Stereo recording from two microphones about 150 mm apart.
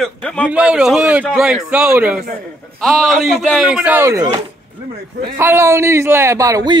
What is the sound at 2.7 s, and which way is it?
A man's voice, centre (ahead or behind).